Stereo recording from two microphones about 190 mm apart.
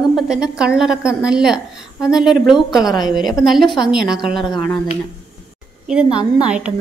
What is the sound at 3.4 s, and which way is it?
A woman's voice, centre (ahead or behind).